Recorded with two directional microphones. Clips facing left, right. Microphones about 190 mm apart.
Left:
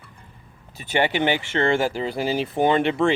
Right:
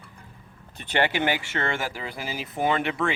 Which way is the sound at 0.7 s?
10° left (ahead or behind).